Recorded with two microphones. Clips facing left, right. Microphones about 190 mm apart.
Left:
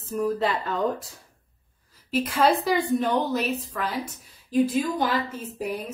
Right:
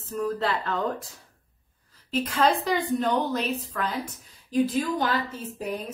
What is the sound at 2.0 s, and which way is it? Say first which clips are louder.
A woman's voice: left 2 dB; 10° left (ahead or behind).